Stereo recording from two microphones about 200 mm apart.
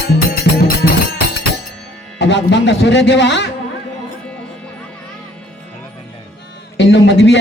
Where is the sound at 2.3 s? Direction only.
60° left (ahead or behind).